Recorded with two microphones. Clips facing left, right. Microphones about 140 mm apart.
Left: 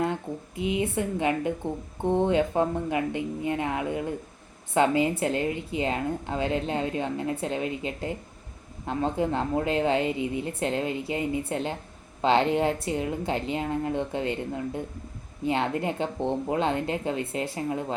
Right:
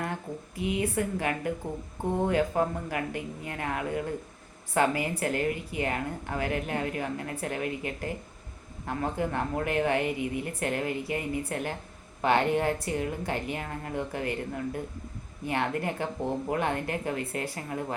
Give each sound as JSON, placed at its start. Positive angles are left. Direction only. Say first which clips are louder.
{"t": 0.0, "sound": "a woman's voice", "louder": "left 6 dB", "side_deg": 20}